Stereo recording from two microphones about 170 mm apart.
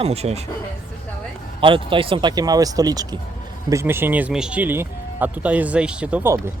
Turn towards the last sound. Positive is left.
turn(degrees=-15)  # may be behind; listen again after turning